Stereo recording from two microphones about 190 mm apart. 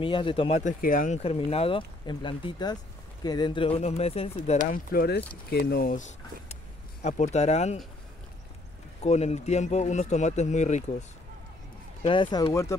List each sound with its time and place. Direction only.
0.0 s speech: 25° left (ahead or behind)
4.7 s speech: 50° left (ahead or behind); by 7.8 s 35° left (ahead or behind)
9.0 s speech: 35° left (ahead or behind)
12.0 s speech: 25° left (ahead or behind)